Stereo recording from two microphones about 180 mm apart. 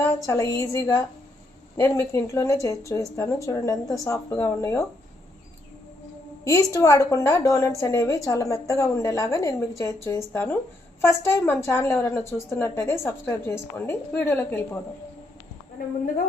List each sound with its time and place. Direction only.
0.0 s a woman's voice: 15° left (ahead or behind)
6.4 s a woman's voice: 15° left (ahead or behind)